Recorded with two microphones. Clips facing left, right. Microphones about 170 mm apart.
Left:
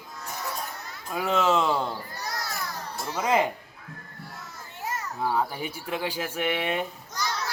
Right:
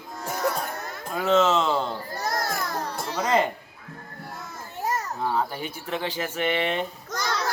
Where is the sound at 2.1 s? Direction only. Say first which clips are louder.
Right 7 dB; 50° right (ahead or behind).